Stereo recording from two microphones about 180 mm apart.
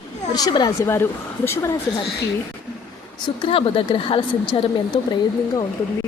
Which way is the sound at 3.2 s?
30° left (ahead or behind).